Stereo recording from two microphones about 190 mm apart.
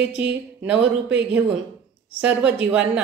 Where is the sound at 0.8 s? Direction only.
70° right (ahead or behind).